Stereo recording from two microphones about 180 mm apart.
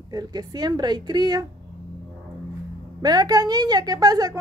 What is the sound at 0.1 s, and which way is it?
A woman's voice, 20° right (ahead or behind).